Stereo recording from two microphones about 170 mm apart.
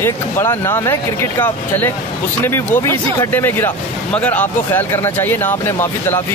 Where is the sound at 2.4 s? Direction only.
15° left (ahead or behind).